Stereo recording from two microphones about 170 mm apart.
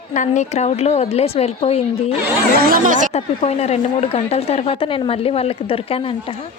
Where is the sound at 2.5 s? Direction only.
60° right (ahead or behind).